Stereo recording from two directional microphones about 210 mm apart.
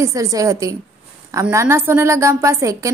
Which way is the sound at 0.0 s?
15° right (ahead or behind).